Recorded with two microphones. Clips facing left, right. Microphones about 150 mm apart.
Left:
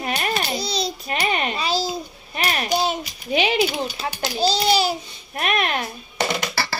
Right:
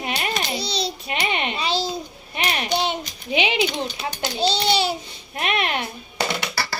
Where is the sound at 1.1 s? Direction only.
40° left (ahead or behind).